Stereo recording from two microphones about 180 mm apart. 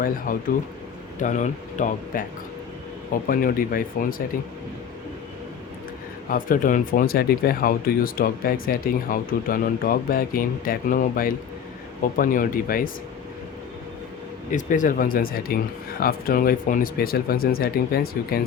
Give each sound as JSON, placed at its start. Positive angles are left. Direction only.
{"t": 0.3, "sound": "speech", "side_deg": 50}
{"t": 3.2, "sound": "speech", "side_deg": 50}
{"t": 6.3, "sound": "speech", "side_deg": 50}
{"t": 14.5, "sound": "speech", "side_deg": 45}